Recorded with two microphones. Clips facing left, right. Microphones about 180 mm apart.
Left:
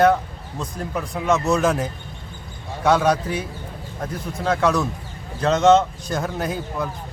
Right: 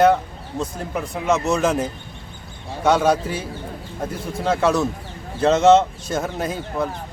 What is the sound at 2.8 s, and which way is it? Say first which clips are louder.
Speech: right 1 dB; centre (ahead or behind).